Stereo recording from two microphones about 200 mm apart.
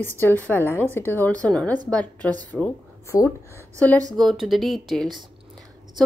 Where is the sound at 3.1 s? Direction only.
15° left (ahead or behind).